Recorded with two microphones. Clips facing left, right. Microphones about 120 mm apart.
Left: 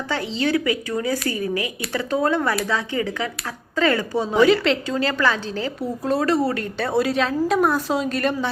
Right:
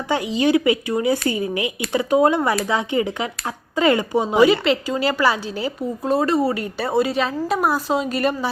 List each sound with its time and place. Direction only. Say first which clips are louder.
0.1 s a woman's voice: right 4 dB; 15° right (ahead or behind)
4.4 s a woman's voice: right 1 dB; 5° right (ahead or behind)
5.8 s a woman's voice: right 2 dB; centre (ahead or behind)